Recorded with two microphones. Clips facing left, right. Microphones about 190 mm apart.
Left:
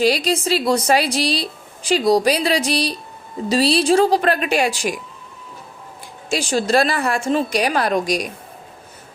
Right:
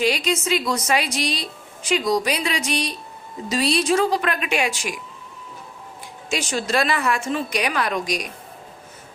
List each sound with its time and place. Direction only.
0.0 s a woman's voice: 35° left (ahead or behind)
6.2 s a woman's voice: 35° left (ahead or behind)